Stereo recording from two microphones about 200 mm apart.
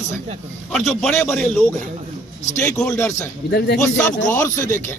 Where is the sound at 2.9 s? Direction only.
15° left (ahead or behind).